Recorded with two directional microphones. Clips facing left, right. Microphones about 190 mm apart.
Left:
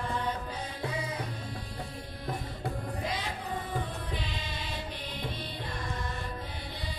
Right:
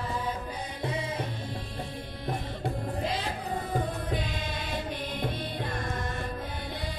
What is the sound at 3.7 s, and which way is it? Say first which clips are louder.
Music: right 5 dB; 50° right (ahead or behind).